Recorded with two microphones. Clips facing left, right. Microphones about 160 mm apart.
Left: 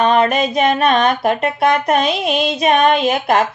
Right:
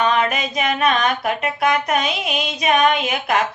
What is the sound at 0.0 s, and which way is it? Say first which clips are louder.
Music: left 5 dB; 40° left (ahead or behind).